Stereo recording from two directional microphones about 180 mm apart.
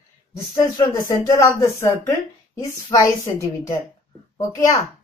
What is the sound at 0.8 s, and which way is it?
A woman's voice, 20° left (ahead or behind).